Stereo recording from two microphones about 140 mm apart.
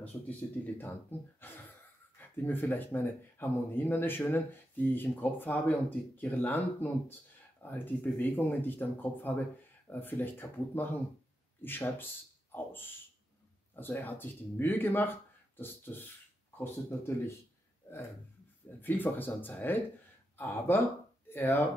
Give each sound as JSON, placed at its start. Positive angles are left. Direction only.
{"t": 0.0, "sound": "speech", "side_deg": 10}
{"t": 1.4, "sound": "a sound", "side_deg": 15}
{"t": 2.1, "sound": "speech", "side_deg": 15}
{"t": 18.8, "sound": "speech", "side_deg": 15}